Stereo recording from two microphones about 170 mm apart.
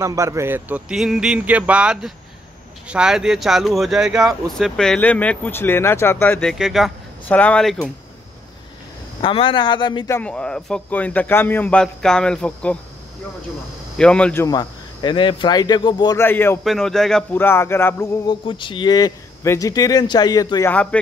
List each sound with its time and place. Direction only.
0.0 s a man's voice: 20° right (ahead or behind); by 7.8 s 5° left (ahead or behind)
9.2 s speech: 30° left (ahead or behind)
10.0 s a man's voice: 10° left (ahead or behind)
13.9 s speech: 5° left (ahead or behind); by 16.2 s 25° left (ahead or behind)
16.2 s a man's voice: 15° left (ahead or behind)
16.6 s a man's voice: centre (ahead or behind)
18.2 s speech: 25° left (ahead or behind)
20.7 s a man's voice: 5° left (ahead or behind)